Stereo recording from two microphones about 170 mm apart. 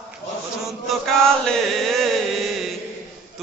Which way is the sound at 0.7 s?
5° left (ahead or behind).